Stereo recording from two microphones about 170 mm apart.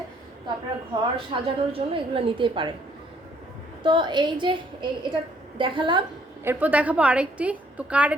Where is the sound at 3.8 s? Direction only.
30° right (ahead or behind).